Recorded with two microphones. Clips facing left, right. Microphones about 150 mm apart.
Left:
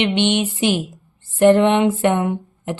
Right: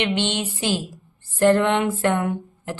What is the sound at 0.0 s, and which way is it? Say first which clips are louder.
Speech: left 5 dB; 20° left (ahead or behind).